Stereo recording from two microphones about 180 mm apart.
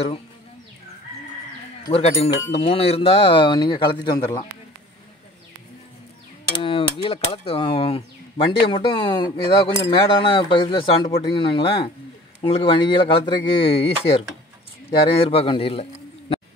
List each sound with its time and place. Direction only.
1.9 s speech: 35° left (ahead or behind)
6.5 s a man's voice: 30° left (ahead or behind)